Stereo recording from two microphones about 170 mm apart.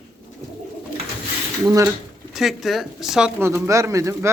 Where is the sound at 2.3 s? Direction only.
Centre (ahead or behind).